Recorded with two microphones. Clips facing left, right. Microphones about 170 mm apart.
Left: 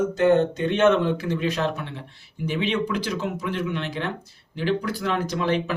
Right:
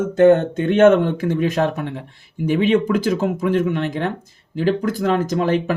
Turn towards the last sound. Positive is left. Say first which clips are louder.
# right 5 dB
turn(degrees=-45)  # may be behind; listen again after turning